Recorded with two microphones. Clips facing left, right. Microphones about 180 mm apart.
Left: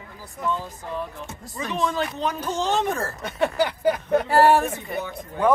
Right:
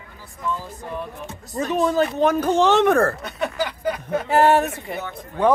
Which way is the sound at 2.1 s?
55° right (ahead or behind).